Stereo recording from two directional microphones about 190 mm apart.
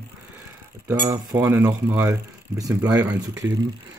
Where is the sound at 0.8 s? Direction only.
10° right (ahead or behind).